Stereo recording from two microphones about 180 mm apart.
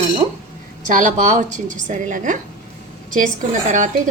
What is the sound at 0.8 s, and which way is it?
Speech, 45° right (ahead or behind).